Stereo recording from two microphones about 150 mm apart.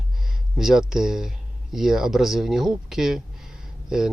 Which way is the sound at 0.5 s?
5° right (ahead or behind).